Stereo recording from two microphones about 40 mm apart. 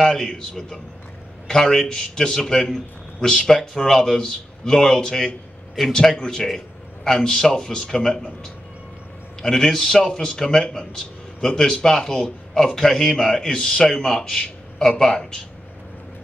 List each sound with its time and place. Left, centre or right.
0.0 s a man's voice: centre
4.2 s a man's voice: centre
9.4 s a man's voice: centre